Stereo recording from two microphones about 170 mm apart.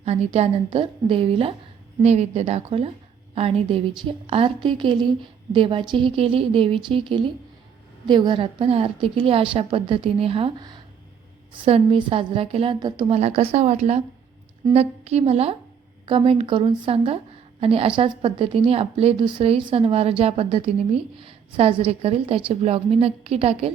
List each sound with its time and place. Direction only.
0.0 s a woman's voice: 40° right (ahead or behind)